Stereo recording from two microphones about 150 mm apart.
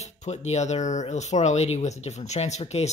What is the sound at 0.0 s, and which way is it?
Speech, 50° left (ahead or behind).